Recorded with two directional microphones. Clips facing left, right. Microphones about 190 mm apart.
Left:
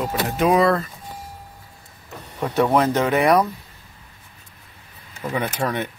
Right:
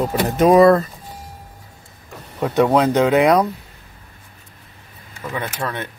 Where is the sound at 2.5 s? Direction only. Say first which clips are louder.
Right 3 dB; 15° right (ahead or behind).